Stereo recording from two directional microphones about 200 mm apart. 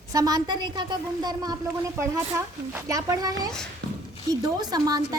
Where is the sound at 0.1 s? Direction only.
20° right (ahead or behind).